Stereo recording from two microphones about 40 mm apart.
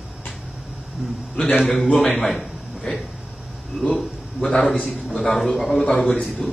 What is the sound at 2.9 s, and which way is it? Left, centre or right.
Speech, left.